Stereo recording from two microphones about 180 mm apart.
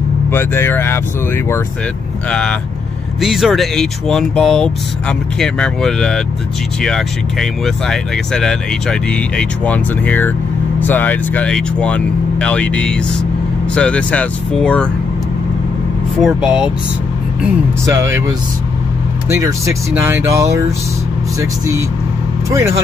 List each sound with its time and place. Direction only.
0.3 s speech: 10° left (ahead or behind)
3.2 s speech: centre (ahead or behind)
16.2 s speech: 5° right (ahead or behind)
19.2 s speech: 15° right (ahead or behind)
22.5 s speech: 15° right (ahead or behind)